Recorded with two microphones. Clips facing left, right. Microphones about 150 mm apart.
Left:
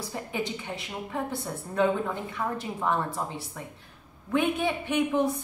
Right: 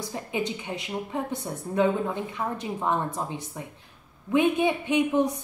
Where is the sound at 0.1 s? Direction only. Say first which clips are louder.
Right 2 dB; 15° right (ahead or behind).